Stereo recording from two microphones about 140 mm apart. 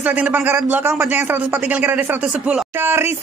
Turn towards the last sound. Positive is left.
turn(degrees=-15)  # may be behind; listen again after turning